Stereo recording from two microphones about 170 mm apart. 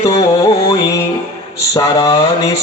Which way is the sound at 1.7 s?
20° left (ahead or behind).